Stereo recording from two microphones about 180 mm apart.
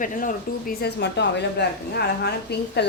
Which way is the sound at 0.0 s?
45° left (ahead or behind).